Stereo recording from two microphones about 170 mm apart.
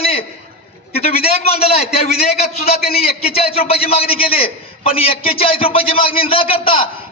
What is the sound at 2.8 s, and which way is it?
Speech, 65° left (ahead or behind).